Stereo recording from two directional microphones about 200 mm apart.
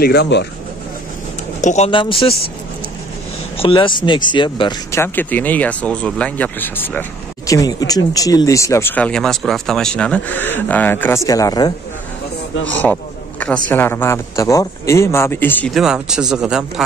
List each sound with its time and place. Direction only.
0.0 s speech: 55° left (ahead or behind)
1.6 s speech: 35° left (ahead or behind)
1.9 s speech: 25° left (ahead or behind)
3.5 s speech: 25° left (ahead or behind)
5.0 s speech: 10° left (ahead or behind)
12.8 s speech: 5° left (ahead or behind)